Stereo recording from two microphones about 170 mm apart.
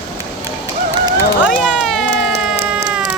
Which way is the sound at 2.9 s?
5° right (ahead or behind).